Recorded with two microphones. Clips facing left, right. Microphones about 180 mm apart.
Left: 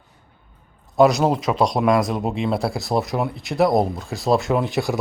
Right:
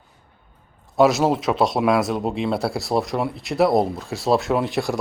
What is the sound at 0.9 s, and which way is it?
Speech, centre (ahead or behind).